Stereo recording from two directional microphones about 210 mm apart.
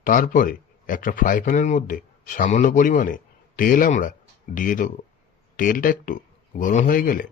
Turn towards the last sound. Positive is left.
turn(degrees=40)  # may be behind; listen again after turning